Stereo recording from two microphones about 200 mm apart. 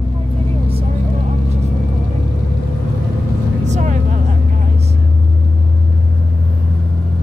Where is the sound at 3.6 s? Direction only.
35° right (ahead or behind).